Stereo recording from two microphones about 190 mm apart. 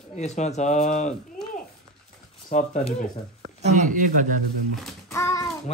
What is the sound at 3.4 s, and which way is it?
Speech, 35° right (ahead or behind).